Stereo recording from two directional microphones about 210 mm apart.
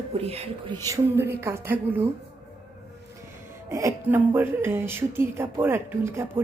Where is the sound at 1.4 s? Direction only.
10° right (ahead or behind).